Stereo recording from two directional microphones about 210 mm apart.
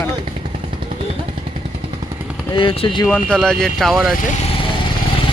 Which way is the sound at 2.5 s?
25° left (ahead or behind).